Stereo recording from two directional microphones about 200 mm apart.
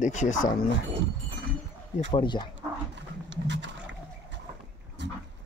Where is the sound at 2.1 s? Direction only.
25° left (ahead or behind).